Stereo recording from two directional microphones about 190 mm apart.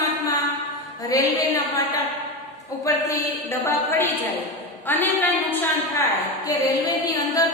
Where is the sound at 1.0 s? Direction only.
20° left (ahead or behind).